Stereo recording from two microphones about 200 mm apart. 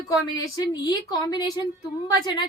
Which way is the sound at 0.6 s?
20° left (ahead or behind).